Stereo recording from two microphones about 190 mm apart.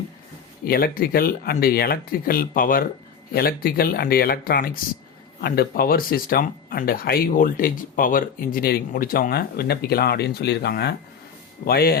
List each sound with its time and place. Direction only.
0.6 s speech: 50° left (ahead or behind)